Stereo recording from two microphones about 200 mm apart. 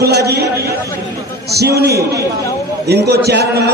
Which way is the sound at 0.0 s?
55° right (ahead or behind).